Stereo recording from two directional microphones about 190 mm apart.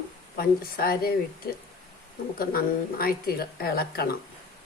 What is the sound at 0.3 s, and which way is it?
Speech, 50° left (ahead or behind).